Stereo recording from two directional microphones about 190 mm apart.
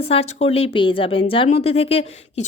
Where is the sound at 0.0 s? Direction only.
30° left (ahead or behind).